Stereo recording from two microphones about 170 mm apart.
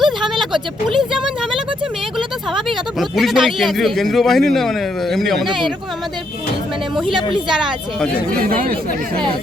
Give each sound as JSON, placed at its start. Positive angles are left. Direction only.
{"t": 0.0, "sound": "a sound", "side_deg": 0}
{"t": 2.1, "sound": "speech", "side_deg": 0}
{"t": 7.1, "sound": "speech", "side_deg": -25}
{"t": 7.5, "sound": "speech", "side_deg": -5}
{"t": 8.4, "sound": "speech", "side_deg": -55}